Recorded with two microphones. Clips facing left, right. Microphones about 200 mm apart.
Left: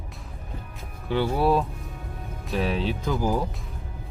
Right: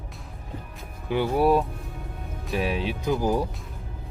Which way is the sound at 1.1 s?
15° right (ahead or behind).